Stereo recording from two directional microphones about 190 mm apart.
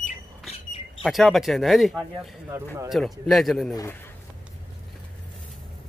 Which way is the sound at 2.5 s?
15° right (ahead or behind).